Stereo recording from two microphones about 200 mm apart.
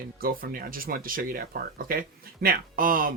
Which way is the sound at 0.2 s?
45° right (ahead or behind).